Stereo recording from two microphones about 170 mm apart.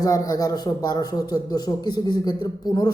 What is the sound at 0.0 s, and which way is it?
Speech, 20° left (ahead or behind).